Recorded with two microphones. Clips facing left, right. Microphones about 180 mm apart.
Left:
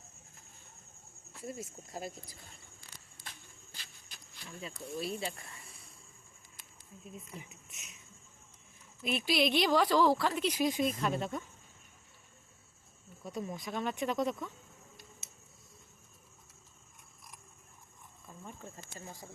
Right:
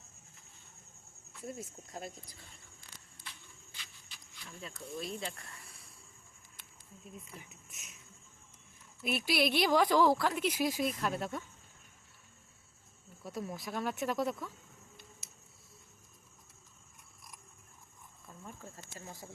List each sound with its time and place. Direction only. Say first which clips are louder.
1.4 s speech: left 1 dB; centre (ahead or behind)
3.2 s a sound: left 1 dB; 45° left (ahead or behind)
4.4 s speech: left 3 dB; 5° left (ahead or behind)
7.3 s speech: left 3 dB; 20° left (ahead or behind)
7.7 s speech: left 1 dB; centre (ahead or behind)
9.0 s speech: left 1 dB; 5° right (ahead or behind)
13.2 s speech: left 1 dB; centre (ahead or behind)
18.4 s a sound: left 1 dB; centre (ahead or behind)